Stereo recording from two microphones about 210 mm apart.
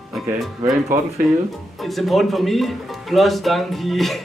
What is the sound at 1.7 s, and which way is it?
Speech, centre (ahead or behind).